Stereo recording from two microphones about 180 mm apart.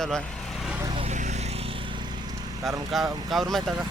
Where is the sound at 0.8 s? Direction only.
30° right (ahead or behind).